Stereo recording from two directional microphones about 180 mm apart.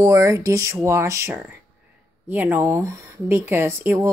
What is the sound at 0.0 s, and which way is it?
Speech, 15° right (ahead or behind).